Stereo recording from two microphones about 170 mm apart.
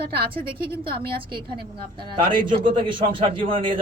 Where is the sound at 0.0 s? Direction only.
65° right (ahead or behind).